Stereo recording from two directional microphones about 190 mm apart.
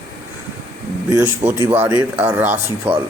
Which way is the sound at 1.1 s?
15° right (ahead or behind).